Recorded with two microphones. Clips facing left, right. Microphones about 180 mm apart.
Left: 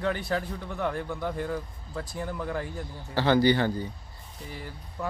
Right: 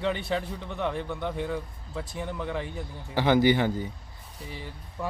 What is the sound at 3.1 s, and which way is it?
Speech, 15° right (ahead or behind).